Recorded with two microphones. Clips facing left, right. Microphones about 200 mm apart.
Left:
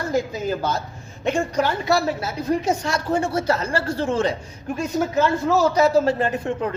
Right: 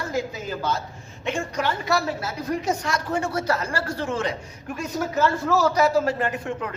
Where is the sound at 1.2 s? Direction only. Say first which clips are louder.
Left 5 dB; 35° left (ahead or behind).